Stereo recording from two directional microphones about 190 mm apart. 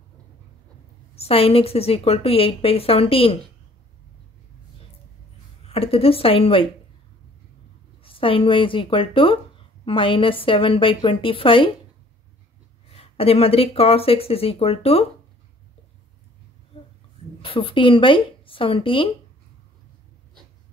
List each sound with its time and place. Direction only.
1.1 s a woman's voice: 30° left (ahead or behind)
5.7 s a woman's voice: 30° left (ahead or behind)
8.0 s a woman's voice: 30° left (ahead or behind)
12.9 s a woman's voice: 30° left (ahead or behind)
17.4 s a woman's voice: 30° left (ahead or behind)